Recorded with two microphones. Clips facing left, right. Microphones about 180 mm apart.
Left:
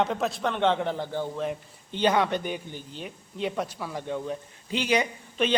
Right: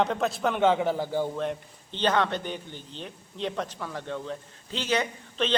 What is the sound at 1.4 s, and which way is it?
A man's voice, 5° left (ahead or behind).